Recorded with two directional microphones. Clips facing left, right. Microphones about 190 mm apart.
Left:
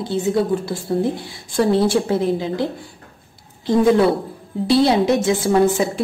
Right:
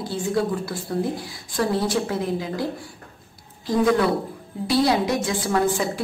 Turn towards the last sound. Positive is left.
turn(degrees=25)  # may be behind; listen again after turning